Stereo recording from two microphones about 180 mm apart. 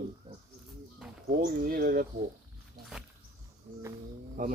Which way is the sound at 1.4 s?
55° right (ahead or behind).